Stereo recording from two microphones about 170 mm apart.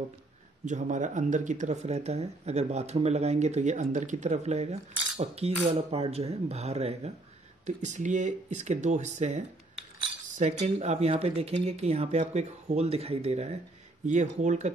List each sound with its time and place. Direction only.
0.7 s speech: 45° right (ahead or behind)